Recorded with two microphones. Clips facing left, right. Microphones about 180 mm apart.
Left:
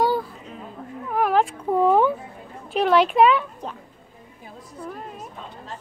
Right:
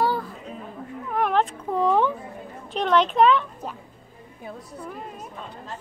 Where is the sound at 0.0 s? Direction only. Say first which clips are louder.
Left 2 dB; 15° left (ahead or behind).